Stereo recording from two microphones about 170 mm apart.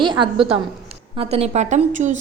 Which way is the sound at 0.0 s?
30° right (ahead or behind).